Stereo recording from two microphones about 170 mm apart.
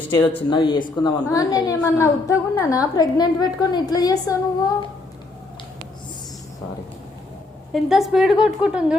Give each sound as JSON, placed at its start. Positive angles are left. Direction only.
{"t": 0.5, "sound": "a woman's voice", "side_deg": 30}
{"t": 7.7, "sound": "a woman's voice", "side_deg": 0}